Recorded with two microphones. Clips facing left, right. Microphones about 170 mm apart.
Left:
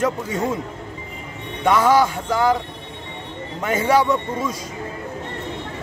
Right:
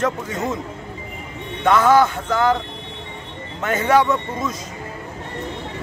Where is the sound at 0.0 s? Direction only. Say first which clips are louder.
Left 1 dB; 10° left (ahead or behind).